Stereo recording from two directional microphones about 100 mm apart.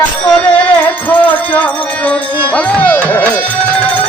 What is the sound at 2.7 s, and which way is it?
Music, 15° left (ahead or behind).